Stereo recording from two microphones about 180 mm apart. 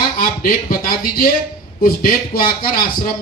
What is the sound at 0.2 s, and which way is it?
A man's voice, 50° left (ahead or behind).